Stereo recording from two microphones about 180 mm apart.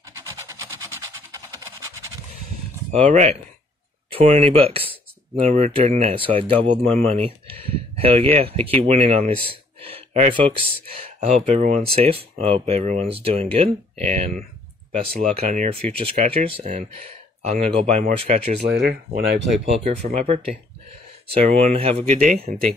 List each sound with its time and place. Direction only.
0.1 s a sound: 15° right (ahead or behind)
2.9 s speech: 40° right (ahead or behind)
4.1 s a sound: 30° right (ahead or behind)
5.5 s speech: 40° right (ahead or behind)
16.2 s speech: 35° right (ahead or behind)
18.6 s speech: 65° right (ahead or behind)
19.6 s speech: 35° right (ahead or behind)